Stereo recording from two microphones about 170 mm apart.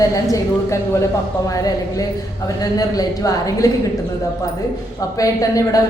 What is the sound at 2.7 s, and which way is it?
Speech, 20° left (ahead or behind).